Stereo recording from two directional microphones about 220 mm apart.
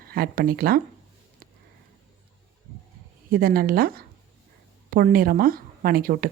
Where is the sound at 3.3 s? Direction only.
40° right (ahead or behind).